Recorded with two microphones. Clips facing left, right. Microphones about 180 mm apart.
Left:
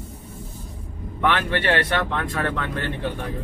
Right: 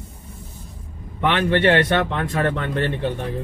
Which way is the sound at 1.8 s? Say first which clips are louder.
Right 4 dB; 25° right (ahead or behind).